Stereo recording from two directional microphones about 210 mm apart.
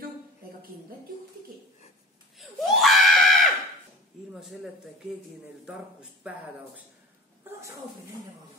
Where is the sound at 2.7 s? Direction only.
Centre (ahead or behind).